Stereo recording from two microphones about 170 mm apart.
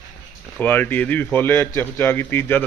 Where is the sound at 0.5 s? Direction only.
10° left (ahead or behind).